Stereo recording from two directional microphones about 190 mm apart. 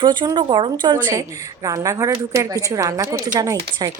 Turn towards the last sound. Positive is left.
turn(degrees=-20)  # may be behind; listen again after turning